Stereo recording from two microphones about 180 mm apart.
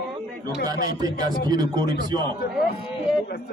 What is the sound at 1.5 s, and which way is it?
Speech, 20° right (ahead or behind).